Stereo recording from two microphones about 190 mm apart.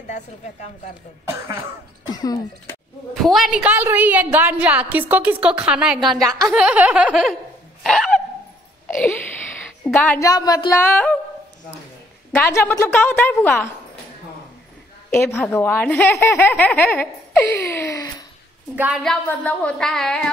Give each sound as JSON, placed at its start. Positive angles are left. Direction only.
{"t": 2.0, "sound": "speech", "side_deg": 20}
{"t": 3.3, "sound": "a woman's voice", "side_deg": -5}
{"t": 7.8, "sound": "dog", "side_deg": 0}
{"t": 8.8, "sound": "wail", "side_deg": 10}
{"t": 9.9, "sound": "speech", "side_deg": 15}
{"t": 12.4, "sound": "speech", "side_deg": 10}
{"t": 15.0, "sound": "speech", "side_deg": 10}
{"t": 17.6, "sound": "gasp", "side_deg": 15}
{"t": 18.8, "sound": "a woman's voice", "side_deg": -5}
{"t": 19.2, "sound": "a woman's voice", "side_deg": 5}